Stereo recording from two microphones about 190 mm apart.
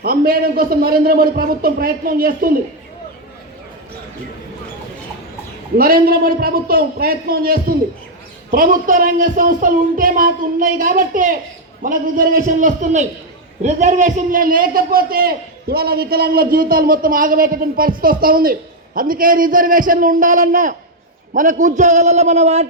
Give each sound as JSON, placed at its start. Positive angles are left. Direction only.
{"t": 0.0, "sound": "a man's voice", "side_deg": -55}
{"t": 5.7, "sound": "a man's voice", "side_deg": -50}